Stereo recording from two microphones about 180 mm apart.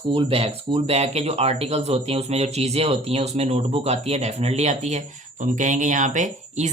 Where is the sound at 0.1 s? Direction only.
30° right (ahead or behind).